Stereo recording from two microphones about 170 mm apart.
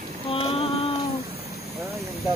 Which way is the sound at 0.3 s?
35° left (ahead or behind).